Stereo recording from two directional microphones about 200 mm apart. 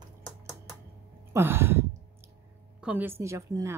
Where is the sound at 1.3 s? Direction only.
10° right (ahead or behind).